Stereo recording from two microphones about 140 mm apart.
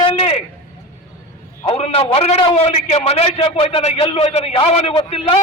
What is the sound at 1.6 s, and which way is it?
A man's voice, 45° left (ahead or behind).